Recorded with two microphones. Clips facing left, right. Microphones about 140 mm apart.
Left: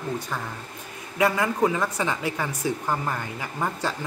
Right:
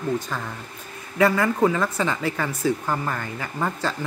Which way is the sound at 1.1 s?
15° left (ahead or behind).